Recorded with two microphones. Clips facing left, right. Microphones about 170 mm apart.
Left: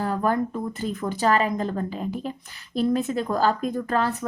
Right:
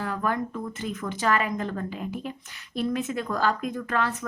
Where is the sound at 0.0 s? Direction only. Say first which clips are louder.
Left 4 dB; 35° left (ahead or behind).